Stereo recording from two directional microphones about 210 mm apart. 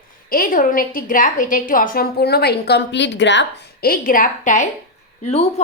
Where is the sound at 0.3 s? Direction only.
45° left (ahead or behind).